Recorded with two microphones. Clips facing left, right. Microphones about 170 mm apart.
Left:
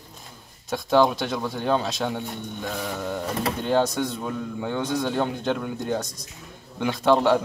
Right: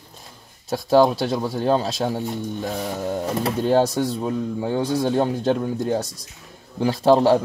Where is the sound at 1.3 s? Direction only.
30° right (ahead or behind).